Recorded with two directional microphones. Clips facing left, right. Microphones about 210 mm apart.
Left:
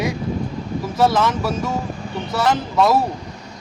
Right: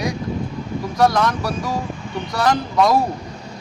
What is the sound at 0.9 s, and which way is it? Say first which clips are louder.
Speech: even; 5° left (ahead or behind).